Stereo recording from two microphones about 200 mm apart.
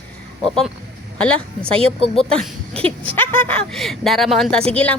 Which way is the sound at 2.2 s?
5° left (ahead or behind).